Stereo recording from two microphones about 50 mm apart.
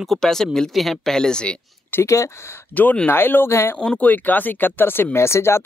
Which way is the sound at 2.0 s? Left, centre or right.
Left.